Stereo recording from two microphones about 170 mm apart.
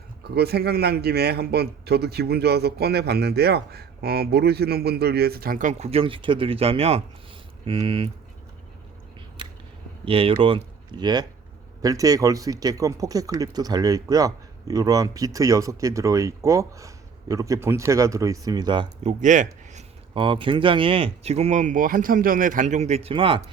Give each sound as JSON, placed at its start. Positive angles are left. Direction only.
{"t": 0.3, "sound": "speech", "side_deg": -70}
{"t": 10.1, "sound": "speech", "side_deg": -35}
{"t": 19.2, "sound": "speech", "side_deg": -45}
{"t": 20.1, "sound": "speech", "side_deg": -30}